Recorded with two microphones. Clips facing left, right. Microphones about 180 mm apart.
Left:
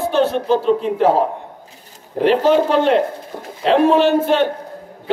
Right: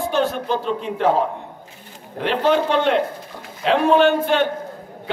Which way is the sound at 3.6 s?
Centre (ahead or behind).